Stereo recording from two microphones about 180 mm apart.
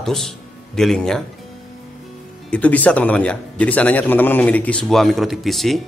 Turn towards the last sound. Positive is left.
turn(degrees=0)  # may be behind; listen again after turning